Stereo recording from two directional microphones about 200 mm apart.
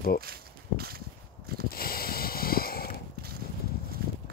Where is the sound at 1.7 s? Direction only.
45° left (ahead or behind).